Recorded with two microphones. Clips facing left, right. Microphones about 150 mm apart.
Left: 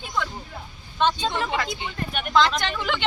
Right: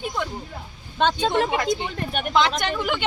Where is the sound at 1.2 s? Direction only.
55° right (ahead or behind).